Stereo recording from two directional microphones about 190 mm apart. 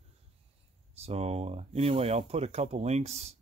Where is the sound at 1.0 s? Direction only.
35° right (ahead or behind).